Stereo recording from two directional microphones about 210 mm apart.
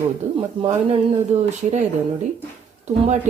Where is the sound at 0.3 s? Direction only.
25° right (ahead or behind).